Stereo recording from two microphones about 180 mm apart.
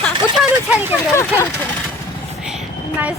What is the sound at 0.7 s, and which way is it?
Speech, 10° right (ahead or behind).